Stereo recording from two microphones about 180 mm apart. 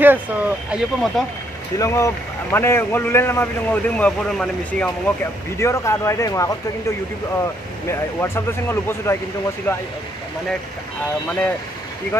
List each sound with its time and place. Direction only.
0.0 s speech: 10° right (ahead or behind)
1.8 s speech: 15° left (ahead or behind)
5.6 s speech: 15° left (ahead or behind)
7.9 s speech: 15° left (ahead or behind)